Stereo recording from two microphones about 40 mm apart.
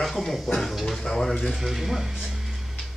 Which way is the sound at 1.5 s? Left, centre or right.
Centre.